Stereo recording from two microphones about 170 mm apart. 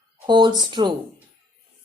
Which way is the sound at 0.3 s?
25° right (ahead or behind).